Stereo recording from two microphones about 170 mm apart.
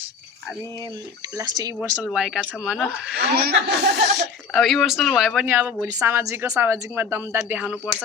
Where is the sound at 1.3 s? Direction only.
20° right (ahead or behind).